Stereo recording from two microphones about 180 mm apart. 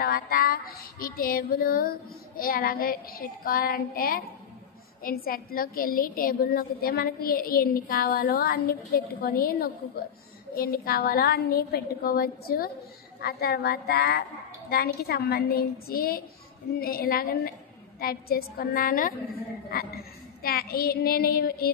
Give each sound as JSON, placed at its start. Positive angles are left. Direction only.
{"t": 0.0, "sound": "child singing", "side_deg": 55}